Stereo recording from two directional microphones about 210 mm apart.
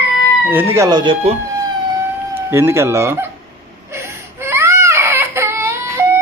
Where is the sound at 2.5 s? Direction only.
10° right (ahead or behind).